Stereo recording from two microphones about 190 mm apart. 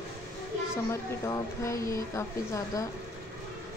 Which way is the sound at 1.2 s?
15° left (ahead or behind).